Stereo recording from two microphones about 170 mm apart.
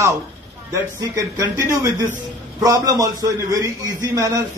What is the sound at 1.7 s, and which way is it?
A man's voice, 20° right (ahead or behind).